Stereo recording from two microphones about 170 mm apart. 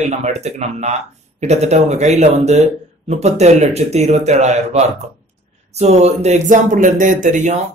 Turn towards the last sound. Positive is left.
turn(degrees=-45)  # may be behind; listen again after turning